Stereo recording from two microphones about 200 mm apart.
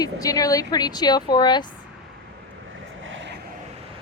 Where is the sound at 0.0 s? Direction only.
20° left (ahead or behind).